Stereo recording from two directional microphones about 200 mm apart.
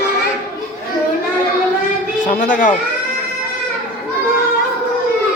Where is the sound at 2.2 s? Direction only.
40° left (ahead or behind).